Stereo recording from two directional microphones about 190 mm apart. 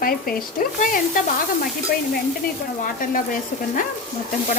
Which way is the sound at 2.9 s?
45° left (ahead or behind).